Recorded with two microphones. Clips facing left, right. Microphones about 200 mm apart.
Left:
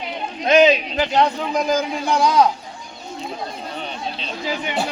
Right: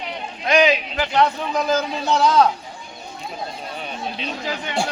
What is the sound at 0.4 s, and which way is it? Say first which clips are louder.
A man's voice: left 3 dB; 20° left (ahead or behind).